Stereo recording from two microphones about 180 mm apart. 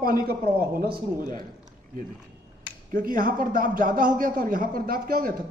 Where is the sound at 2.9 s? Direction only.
50° right (ahead or behind).